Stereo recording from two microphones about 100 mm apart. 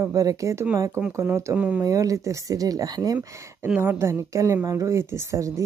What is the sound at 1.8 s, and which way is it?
Speech, 35° right (ahead or behind).